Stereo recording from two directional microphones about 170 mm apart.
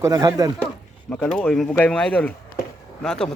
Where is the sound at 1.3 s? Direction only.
5° left (ahead or behind).